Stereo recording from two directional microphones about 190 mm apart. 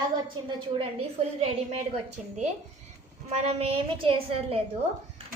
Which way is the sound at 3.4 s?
30° right (ahead or behind).